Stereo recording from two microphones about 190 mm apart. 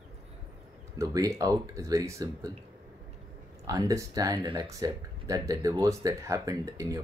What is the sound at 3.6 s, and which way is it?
Speech, 20° right (ahead or behind).